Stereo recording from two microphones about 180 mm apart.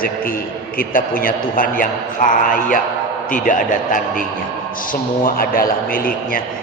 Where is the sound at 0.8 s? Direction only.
50° left (ahead or behind).